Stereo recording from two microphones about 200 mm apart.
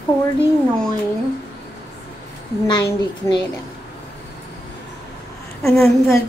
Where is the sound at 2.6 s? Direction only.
20° left (ahead or behind).